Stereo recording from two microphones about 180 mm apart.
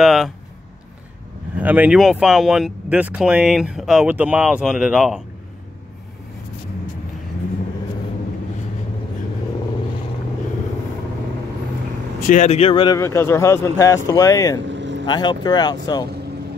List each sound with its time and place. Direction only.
0.0 s speech: centre (ahead or behind)
1.6 s speech: 10° right (ahead or behind)
12.2 s speech: 45° left (ahead or behind); by 13.0 s 25° left (ahead or behind)
13.0 s speech: 15° left (ahead or behind)
14.7 s vehicle: 80° right
15.0 s speech: 25° left (ahead or behind)